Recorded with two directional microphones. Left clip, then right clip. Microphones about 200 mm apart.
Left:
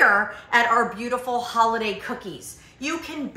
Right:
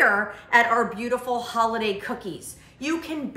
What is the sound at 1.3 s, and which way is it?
Speech, 25° right (ahead or behind).